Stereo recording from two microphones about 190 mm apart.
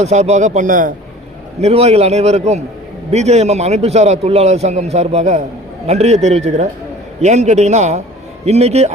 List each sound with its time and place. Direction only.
0.0 s a man's voice: 35° right (ahead or behind)
1.6 s a man's voice: 30° right (ahead or behind)